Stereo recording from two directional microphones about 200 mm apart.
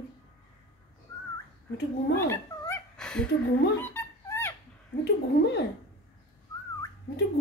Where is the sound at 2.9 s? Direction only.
5° left (ahead or behind).